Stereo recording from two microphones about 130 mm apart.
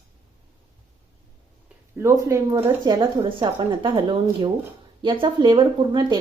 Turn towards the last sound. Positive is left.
turn(degrees=-35)  # may be behind; listen again after turning